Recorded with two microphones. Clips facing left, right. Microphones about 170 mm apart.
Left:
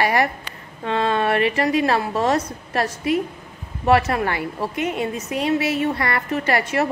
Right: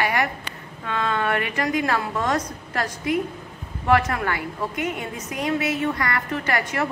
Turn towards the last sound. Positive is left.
turn(degrees=25)  # may be behind; listen again after turning